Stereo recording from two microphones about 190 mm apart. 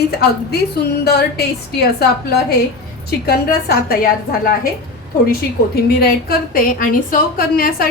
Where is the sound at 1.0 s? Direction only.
55° left (ahead or behind).